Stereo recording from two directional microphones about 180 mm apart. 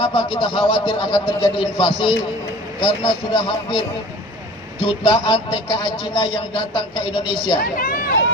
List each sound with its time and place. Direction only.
0.0 s a man's voice: 30° left (ahead or behind)
7.6 s speech: 55° left (ahead or behind)